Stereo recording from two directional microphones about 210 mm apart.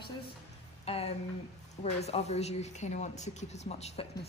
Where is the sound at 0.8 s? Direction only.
30° left (ahead or behind).